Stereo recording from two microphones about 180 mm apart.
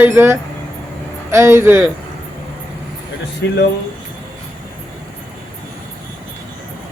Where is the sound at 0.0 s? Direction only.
10° right (ahead or behind).